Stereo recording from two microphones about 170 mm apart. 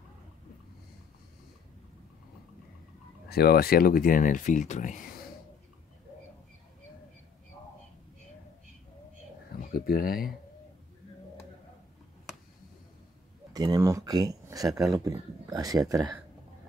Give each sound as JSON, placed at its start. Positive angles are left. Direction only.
{"t": 3.3, "sound": "speech", "side_deg": 65}
{"t": 9.8, "sound": "speech", "side_deg": 60}
{"t": 13.5, "sound": "speech", "side_deg": -25}